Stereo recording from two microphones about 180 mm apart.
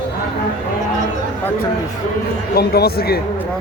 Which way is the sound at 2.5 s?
60° left (ahead or behind).